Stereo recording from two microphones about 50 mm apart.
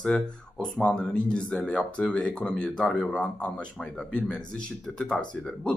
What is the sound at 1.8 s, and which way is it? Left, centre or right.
Speech, left.